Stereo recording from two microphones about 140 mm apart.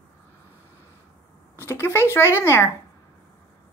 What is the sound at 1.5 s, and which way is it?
A woman's voice, 15° left (ahead or behind).